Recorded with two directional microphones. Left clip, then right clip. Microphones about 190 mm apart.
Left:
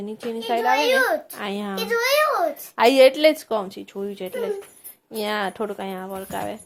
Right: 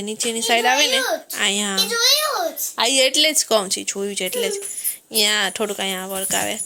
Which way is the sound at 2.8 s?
Centre (ahead or behind).